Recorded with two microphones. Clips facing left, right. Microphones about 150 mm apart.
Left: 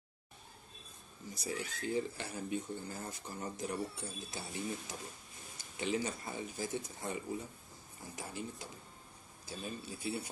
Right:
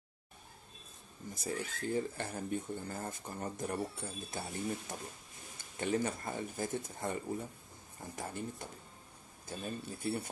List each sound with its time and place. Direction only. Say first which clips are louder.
1.3 s speech: right 1 dB; 50° right (ahead or behind)